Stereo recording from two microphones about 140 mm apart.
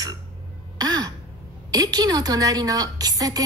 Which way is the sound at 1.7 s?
25° right (ahead or behind).